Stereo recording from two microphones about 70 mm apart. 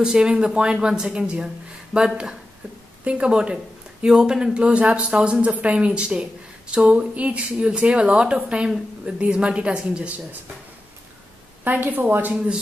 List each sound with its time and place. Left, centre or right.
0.0 s speech: centre
11.6 s a woman's voice: right